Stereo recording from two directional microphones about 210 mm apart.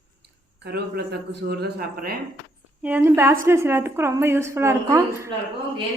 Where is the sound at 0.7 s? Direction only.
50° right (ahead or behind).